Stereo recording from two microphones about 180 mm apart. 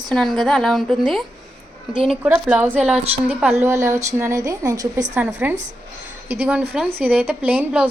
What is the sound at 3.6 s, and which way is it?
A woman's voice, 15° right (ahead or behind).